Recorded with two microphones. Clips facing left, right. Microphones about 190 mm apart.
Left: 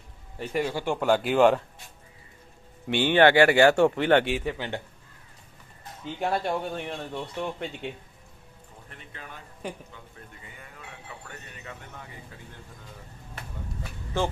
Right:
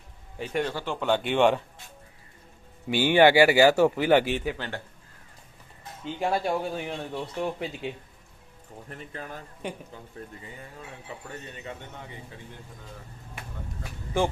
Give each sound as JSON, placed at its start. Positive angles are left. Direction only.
{"t": 0.3, "sound": "speech", "side_deg": 0}
{"t": 0.7, "sound": "speech", "side_deg": 15}
{"t": 2.8, "sound": "speech", "side_deg": -5}
{"t": 4.5, "sound": "speech", "side_deg": 15}
{"t": 6.1, "sound": "speech", "side_deg": 0}
{"t": 8.9, "sound": "speech", "side_deg": -40}